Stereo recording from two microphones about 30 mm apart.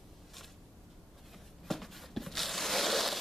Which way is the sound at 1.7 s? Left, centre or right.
Centre.